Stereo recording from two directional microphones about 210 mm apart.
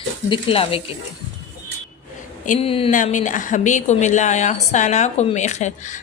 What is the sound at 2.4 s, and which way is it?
A woman's voice, 30° left (ahead or behind).